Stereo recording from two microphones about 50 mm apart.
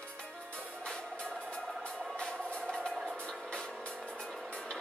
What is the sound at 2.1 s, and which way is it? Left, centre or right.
Vehicle, centre.